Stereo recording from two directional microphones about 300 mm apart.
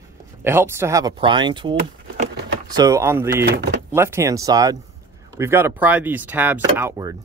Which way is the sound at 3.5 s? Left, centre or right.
Right.